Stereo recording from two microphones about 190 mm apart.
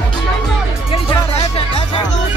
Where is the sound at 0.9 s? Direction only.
30° left (ahead or behind).